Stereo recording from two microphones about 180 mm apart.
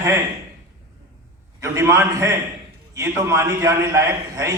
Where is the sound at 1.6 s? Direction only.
15° right (ahead or behind).